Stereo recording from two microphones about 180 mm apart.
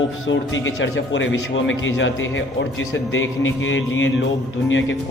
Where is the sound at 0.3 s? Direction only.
90° left.